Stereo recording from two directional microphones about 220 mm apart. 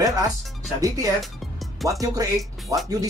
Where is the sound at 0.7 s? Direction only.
15° right (ahead or behind).